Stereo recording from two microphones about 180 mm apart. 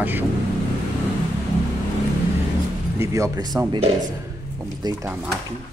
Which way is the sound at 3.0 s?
15° right (ahead or behind).